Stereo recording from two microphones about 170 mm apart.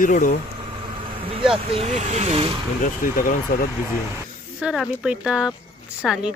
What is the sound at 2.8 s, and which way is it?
Speech, 55° left (ahead or behind).